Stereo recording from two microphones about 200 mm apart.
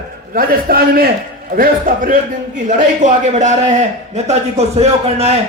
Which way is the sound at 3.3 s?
35° right (ahead or behind).